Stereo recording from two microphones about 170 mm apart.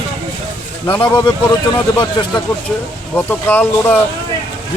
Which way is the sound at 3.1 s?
10° left (ahead or behind).